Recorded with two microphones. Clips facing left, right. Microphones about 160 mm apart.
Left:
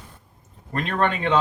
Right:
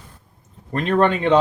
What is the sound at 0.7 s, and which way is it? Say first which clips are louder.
Speech: right 6 dB; 30° right (ahead or behind).